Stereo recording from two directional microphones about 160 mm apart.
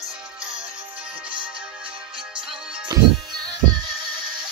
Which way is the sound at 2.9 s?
25° right (ahead or behind).